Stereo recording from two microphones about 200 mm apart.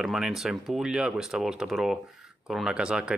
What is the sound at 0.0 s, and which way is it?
Speech, centre (ahead or behind).